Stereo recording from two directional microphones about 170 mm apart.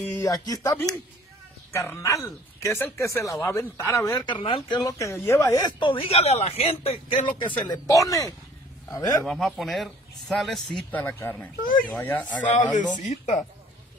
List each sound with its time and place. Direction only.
0.1 s speech: 20° left (ahead or behind)
4.4 s speech: 30° left (ahead or behind)
9.2 s speech: centre (ahead or behind)
12.7 s speech: 45° left (ahead or behind)